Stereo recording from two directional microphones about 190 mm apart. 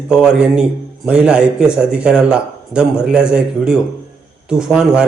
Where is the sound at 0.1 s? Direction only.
5° right (ahead or behind).